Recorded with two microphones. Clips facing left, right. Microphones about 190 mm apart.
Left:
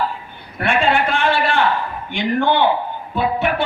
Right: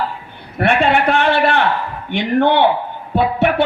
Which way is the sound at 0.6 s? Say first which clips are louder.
Right 3 dB; 65° right (ahead or behind).